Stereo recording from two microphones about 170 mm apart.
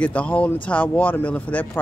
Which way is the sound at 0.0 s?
10° left (ahead or behind).